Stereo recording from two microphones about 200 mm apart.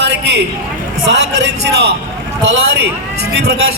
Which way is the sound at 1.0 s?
60° right (ahead or behind).